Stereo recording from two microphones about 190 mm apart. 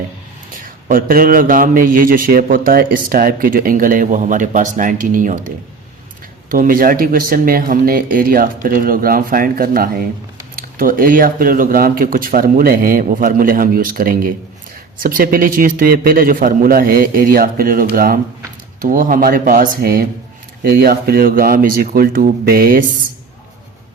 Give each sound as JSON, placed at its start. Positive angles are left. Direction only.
{"t": 0.9, "sound": "a man's voice", "side_deg": -50}
{"t": 6.5, "sound": "a man's voice", "side_deg": -45}